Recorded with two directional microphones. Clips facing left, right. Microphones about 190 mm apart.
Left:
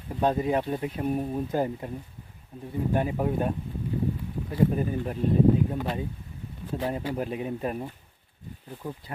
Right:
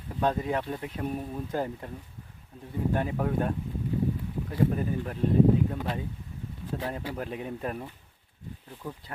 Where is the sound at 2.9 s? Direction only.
15° left (ahead or behind).